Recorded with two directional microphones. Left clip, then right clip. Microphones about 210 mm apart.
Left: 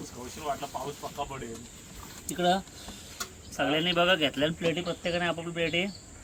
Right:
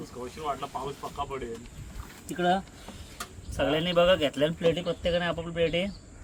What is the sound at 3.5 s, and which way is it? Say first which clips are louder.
Speech: right 1 dB; 55° right (ahead or behind).